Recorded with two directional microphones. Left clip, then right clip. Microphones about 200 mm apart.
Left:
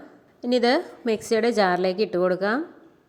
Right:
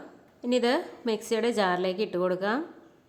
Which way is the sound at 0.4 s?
20° left (ahead or behind).